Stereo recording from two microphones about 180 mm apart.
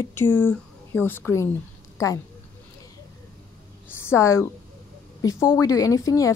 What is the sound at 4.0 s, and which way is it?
A woman's voice, 15° left (ahead or behind).